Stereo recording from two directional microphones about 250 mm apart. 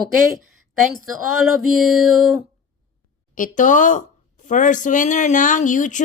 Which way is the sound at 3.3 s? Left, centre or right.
Left.